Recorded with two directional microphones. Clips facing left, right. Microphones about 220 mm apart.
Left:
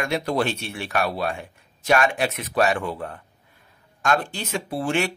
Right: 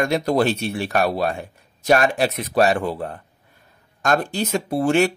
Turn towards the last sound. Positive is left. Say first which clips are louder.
# right 6 dB
turn(degrees=-40)  # may be behind; listen again after turning